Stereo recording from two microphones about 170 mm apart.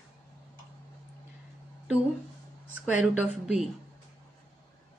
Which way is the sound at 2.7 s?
10° right (ahead or behind).